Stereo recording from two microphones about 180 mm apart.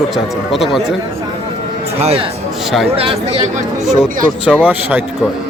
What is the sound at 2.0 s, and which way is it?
Speech, 35° right (ahead or behind).